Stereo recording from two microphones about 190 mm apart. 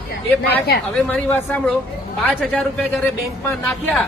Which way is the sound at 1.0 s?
5° left (ahead or behind).